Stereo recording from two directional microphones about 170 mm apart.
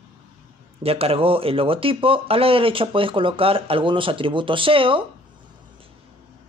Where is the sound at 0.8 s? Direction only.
35° right (ahead or behind).